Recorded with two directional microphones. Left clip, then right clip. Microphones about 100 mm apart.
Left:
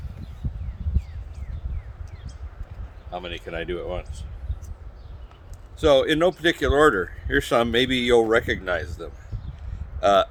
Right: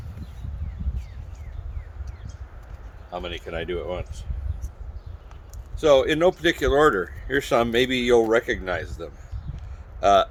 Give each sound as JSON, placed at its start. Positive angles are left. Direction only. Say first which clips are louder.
{"t": 3.1, "sound": "speech", "louder": "right 1 dB", "side_deg": 35}
{"t": 5.8, "sound": "speech", "louder": "even", "side_deg": 40}